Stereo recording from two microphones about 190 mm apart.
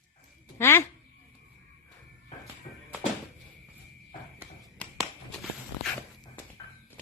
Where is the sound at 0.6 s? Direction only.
15° left (ahead or behind).